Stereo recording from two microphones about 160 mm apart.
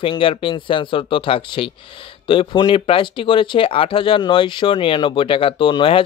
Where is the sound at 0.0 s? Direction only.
30° left (ahead or behind).